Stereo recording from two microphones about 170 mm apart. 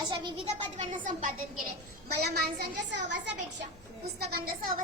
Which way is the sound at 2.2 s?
75° right (ahead or behind).